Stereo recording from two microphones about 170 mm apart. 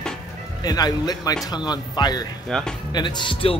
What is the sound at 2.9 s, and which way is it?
Speech, 25° left (ahead or behind).